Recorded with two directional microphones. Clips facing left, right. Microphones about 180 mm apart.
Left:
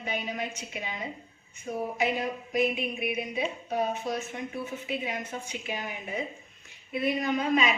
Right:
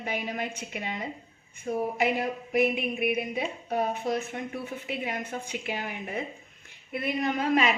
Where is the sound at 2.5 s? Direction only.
60° right (ahead or behind).